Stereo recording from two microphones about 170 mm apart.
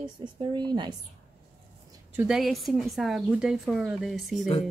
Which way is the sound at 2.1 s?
5° right (ahead or behind).